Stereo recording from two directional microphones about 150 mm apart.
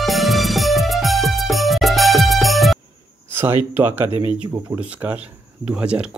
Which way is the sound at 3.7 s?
15° right (ahead or behind).